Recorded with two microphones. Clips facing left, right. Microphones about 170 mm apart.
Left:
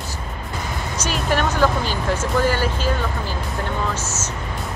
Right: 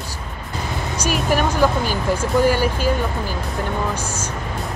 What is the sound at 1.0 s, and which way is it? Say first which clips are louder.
Speech: right 2 dB; 10° right (ahead or behind).